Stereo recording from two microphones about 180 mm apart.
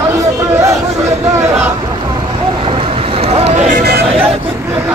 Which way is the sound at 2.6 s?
30° right (ahead or behind).